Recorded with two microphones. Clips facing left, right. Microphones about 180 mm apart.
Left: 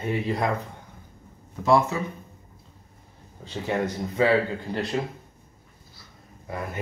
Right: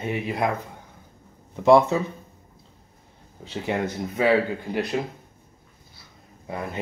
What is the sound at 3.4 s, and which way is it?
Speech, 15° right (ahead or behind).